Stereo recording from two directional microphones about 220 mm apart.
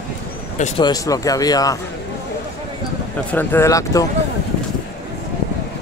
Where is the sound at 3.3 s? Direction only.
10° left (ahead or behind).